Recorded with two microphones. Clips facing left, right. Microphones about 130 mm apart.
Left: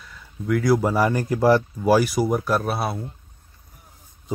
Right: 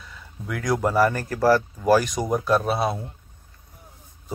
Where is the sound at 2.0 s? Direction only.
5° left (ahead or behind).